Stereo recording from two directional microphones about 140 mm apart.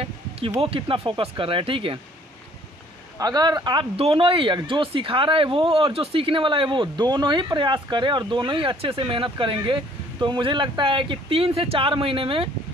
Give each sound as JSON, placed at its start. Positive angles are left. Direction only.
{"t": 0.6, "sound": "speech", "side_deg": -40}
{"t": 3.2, "sound": "speech", "side_deg": -30}
{"t": 3.9, "sound": "speech", "side_deg": -45}